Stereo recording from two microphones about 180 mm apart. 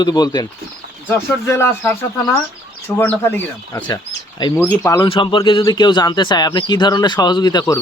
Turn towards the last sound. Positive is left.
turn(degrees=25)  # may be behind; listen again after turning